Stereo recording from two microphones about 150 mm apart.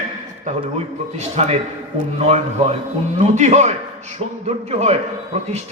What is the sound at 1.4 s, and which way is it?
A man's voice, 40° right (ahead or behind).